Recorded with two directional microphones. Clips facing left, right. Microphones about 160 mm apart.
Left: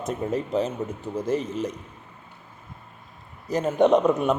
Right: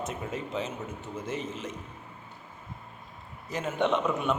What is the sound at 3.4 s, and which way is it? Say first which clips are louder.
Speech: left 8 dB; 40° left (ahead or behind).